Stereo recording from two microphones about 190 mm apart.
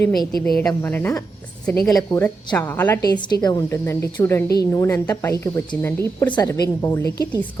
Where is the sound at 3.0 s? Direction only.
20° left (ahead or behind).